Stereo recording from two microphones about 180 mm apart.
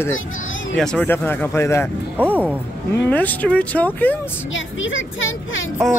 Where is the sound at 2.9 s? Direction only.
10° left (ahead or behind).